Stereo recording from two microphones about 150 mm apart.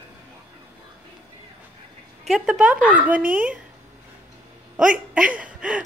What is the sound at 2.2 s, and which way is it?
Speech, centre (ahead or behind).